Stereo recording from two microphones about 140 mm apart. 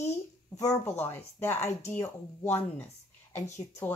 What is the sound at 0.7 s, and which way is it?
Speech, 15° left (ahead or behind).